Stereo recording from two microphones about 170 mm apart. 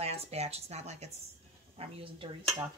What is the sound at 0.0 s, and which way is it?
Speech, 40° right (ahead or behind).